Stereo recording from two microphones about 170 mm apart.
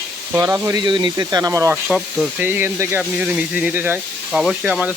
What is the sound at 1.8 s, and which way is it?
Speech, 5° right (ahead or behind).